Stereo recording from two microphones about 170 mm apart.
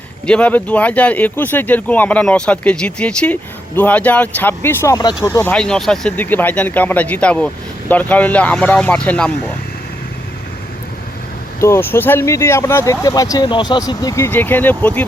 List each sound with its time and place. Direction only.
0.3 s speech: 5° left (ahead or behind)
11.6 s speech: 15° left (ahead or behind)